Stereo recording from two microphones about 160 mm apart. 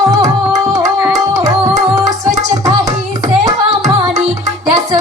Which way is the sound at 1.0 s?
20° right (ahead or behind).